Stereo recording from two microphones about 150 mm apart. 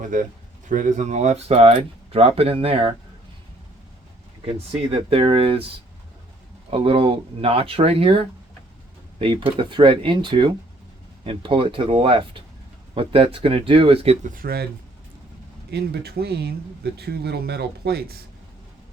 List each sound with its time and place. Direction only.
0.0 s speech: 60° right (ahead or behind); by 2.9 s 40° right (ahead or behind)
4.4 s speech: 40° right (ahead or behind)
6.7 s speech: 40° right (ahead or behind)
14.3 s speech: 75° right (ahead or behind)
15.7 s speech: 90° right